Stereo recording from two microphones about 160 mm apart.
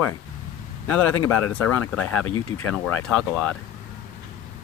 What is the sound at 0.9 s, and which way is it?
Speech, 10° left (ahead or behind).